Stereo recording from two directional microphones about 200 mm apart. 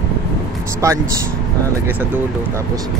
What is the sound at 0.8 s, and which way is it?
Speech, 15° right (ahead or behind).